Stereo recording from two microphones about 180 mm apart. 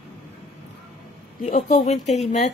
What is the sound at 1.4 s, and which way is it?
Speech, 45° left (ahead or behind).